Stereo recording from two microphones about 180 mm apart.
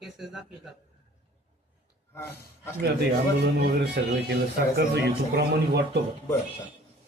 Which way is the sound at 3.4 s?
65° right (ahead or behind).